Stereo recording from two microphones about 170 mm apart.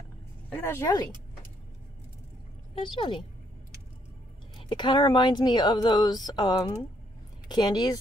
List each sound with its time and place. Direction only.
0.5 s speech: 15° left (ahead or behind)
2.7 s a woman's voice: 30° left (ahead or behind)
4.6 s a woman's voice: 25° left (ahead or behind)